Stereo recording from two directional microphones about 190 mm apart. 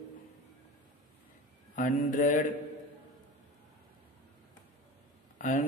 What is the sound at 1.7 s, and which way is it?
Speech, 45° left (ahead or behind).